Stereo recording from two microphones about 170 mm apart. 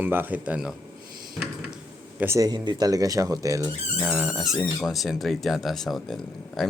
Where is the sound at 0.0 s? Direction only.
10° right (ahead or behind).